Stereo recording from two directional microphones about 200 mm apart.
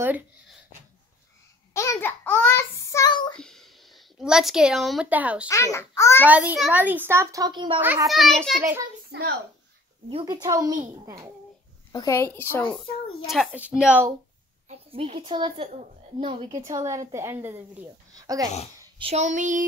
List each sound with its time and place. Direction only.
0.0 s a sound: 10° right (ahead or behind)
1.7 s child singing: 15° left (ahead or behind)
3.3 s speech: centre (ahead or behind)
5.5 s a child's voice: 15° left (ahead or behind)
6.2 s a child's voice: 5° right (ahead or behind); by 7.8 s 25° right (ahead or behind)
7.8 s a child's voice: 10° right (ahead or behind)
9.1 s a woman's voice: 55° right (ahead or behind)
10.2 s a woman's voice: 20° right (ahead or behind)
11.9 s a child's voice: 15° left (ahead or behind)
13.3 s a child's voice: 5° right (ahead or behind)
14.9 s a woman's voice: 25° right (ahead or behind)
18.8 s child singing: 25° right (ahead or behind)